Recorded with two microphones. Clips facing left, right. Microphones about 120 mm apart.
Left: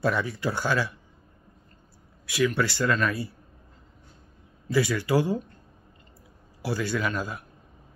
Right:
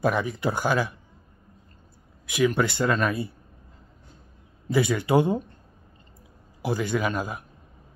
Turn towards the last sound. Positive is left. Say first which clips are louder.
# right 2 dB
turn(degrees=-15)  # may be behind; listen again after turning